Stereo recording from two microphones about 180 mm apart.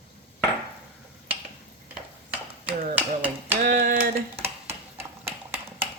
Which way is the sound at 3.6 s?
50° right (ahead or behind).